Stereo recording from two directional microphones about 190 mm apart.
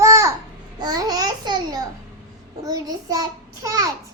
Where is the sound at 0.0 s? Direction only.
15° right (ahead or behind).